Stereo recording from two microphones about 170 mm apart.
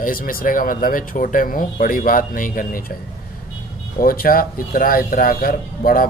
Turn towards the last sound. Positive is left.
turn(degrees=55)  # may be behind; listen again after turning